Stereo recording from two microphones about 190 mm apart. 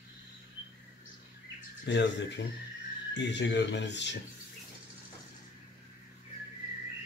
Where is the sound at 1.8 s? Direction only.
70° left (ahead or behind).